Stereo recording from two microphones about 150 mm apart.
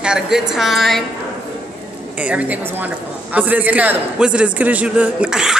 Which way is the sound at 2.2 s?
10° right (ahead or behind).